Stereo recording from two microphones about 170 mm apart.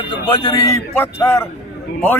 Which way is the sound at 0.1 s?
25° left (ahead or behind).